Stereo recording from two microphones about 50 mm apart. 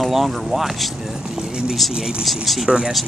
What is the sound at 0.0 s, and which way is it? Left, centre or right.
Speech, centre.